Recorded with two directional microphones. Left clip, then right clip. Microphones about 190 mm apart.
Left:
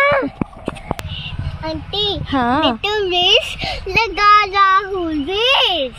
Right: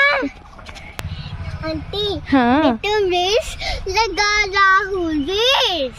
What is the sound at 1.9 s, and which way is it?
A child's voice, 15° right (ahead or behind).